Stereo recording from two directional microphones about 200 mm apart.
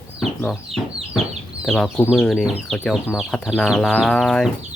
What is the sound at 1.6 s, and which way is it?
Speech, 5° left (ahead or behind).